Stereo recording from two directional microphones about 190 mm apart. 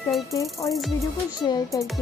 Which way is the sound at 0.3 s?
15° left (ahead or behind).